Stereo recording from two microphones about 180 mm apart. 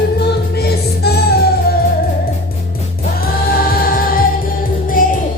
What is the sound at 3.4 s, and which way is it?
Music, 55° left (ahead or behind).